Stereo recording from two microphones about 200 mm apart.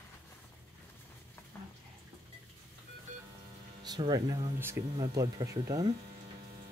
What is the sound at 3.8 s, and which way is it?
Speech, 20° right (ahead or behind).